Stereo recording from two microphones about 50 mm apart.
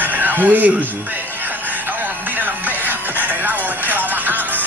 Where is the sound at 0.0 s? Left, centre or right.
Right.